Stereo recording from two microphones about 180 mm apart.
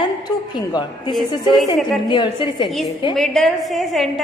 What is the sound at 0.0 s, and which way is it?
A woman's voice, 20° left (ahead or behind).